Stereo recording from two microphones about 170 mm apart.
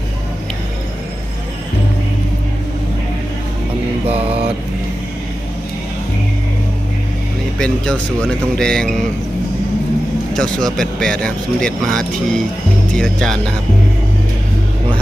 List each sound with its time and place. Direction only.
4.0 s mantra: 35° right (ahead or behind)
7.6 s speech: 5° left (ahead or behind)
10.3 s speech: 5° left (ahead or behind)